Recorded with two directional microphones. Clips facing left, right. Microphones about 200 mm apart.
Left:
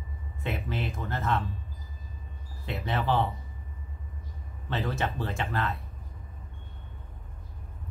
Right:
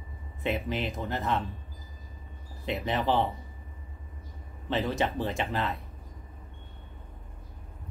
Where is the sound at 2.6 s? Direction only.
20° right (ahead or behind).